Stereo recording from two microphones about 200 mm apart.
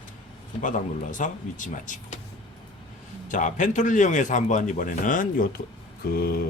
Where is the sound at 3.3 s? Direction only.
40° left (ahead or behind).